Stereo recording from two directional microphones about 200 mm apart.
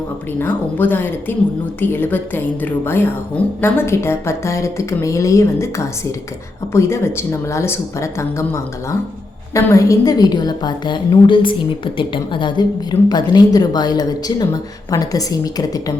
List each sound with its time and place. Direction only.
0.3 s a woman's voice: 10° left (ahead or behind)